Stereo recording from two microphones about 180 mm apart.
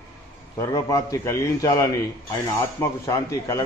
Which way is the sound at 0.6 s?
15° left (ahead or behind).